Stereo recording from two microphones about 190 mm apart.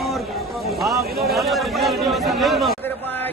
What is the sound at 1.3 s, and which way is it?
Chatter, centre (ahead or behind).